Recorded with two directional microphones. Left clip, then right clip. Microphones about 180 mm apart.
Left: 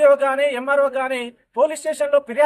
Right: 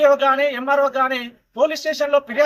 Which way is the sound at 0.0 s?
30° left (ahead or behind).